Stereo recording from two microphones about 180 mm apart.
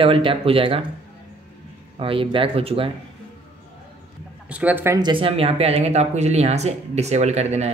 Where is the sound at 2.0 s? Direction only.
30° right (ahead or behind).